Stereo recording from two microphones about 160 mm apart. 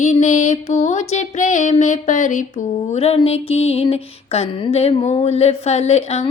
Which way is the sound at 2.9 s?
40° left (ahead or behind).